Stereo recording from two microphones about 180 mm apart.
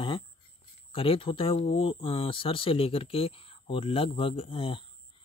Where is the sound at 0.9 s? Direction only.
30° left (ahead or behind).